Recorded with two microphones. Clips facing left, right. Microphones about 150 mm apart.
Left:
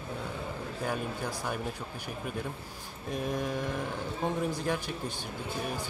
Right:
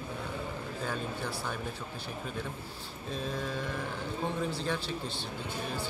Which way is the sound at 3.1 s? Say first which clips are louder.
Left 3 dB; 15° left (ahead or behind).